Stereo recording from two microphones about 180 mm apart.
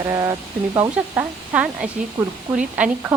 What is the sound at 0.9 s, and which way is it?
A woman's voice, 10° right (ahead or behind).